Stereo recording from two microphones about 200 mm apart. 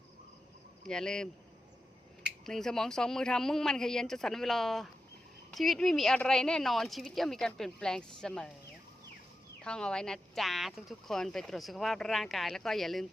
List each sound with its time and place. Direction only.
0.9 s speech: 5° left (ahead or behind)
2.5 s speech: centre (ahead or behind)
9.6 s speech: 5° left (ahead or behind)